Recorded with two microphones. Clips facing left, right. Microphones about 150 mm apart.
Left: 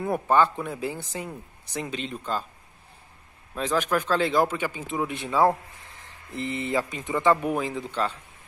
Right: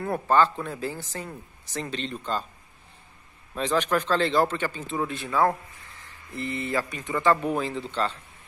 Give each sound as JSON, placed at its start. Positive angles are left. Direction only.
{"t": 0.0, "sound": "speech", "side_deg": 15}
{"t": 3.5, "sound": "speech", "side_deg": 5}